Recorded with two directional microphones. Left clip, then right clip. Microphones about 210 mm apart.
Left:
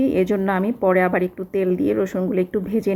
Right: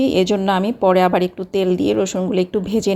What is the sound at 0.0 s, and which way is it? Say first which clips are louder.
A woman's voice: right 3 dB; 20° right (ahead or behind).